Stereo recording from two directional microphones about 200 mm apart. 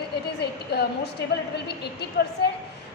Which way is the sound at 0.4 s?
55° left (ahead or behind).